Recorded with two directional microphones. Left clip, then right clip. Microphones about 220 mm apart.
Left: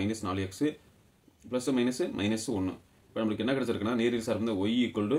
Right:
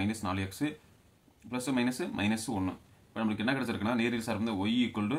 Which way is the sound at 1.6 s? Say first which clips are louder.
Left 2 dB; 35° right (ahead or behind).